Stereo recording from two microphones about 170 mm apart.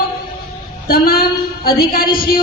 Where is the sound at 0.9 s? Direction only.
60° left (ahead or behind).